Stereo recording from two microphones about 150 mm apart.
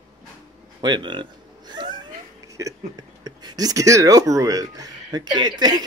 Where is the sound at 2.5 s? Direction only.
20° right (ahead or behind).